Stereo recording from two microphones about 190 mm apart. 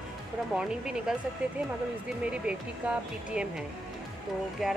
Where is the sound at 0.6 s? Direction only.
5° right (ahead or behind).